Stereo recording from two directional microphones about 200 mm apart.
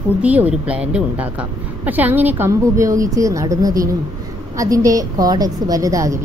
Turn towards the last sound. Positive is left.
turn(degrees=-15)  # may be behind; listen again after turning